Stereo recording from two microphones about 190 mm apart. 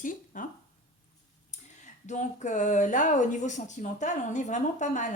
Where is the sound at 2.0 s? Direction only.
40° left (ahead or behind).